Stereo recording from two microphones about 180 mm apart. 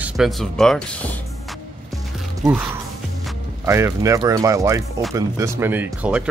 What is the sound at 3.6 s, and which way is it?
Speech, 15° right (ahead or behind).